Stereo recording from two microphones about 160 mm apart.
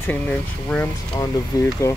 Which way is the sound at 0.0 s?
10° left (ahead or behind).